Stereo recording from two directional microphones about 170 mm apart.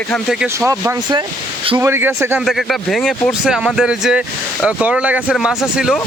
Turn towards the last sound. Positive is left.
turn(degrees=-5)  # may be behind; listen again after turning